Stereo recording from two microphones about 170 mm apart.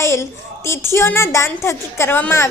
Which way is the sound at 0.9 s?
15° left (ahead or behind).